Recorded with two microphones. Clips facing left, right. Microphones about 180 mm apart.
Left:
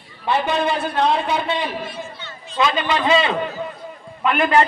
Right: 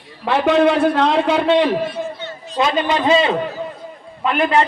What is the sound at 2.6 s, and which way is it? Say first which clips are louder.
Speech: right 3 dB; 25° right (ahead or behind).